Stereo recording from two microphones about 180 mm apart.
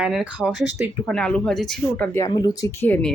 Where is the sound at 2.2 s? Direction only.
20° left (ahead or behind).